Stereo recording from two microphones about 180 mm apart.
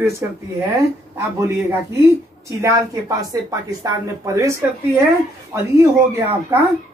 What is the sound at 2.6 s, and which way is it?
Speech, 15° right (ahead or behind).